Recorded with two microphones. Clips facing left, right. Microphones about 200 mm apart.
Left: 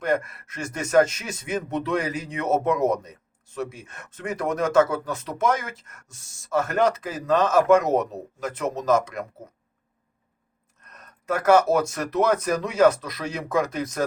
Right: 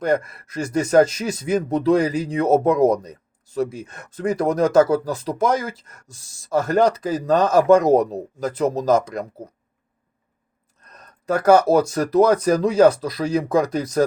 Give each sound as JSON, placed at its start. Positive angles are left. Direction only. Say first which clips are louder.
{"t": 0.0, "sound": "speech", "louder": "right 4 dB", "side_deg": -35}
{"t": 10.8, "sound": "speech", "louder": "right 2 dB", "side_deg": -35}